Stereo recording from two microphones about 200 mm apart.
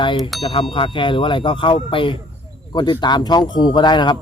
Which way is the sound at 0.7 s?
25° left (ahead or behind).